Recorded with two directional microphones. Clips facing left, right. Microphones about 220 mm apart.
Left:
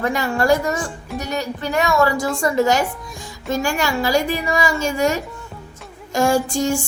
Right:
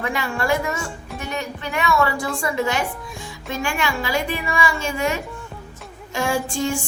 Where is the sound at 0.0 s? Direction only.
40° left (ahead or behind).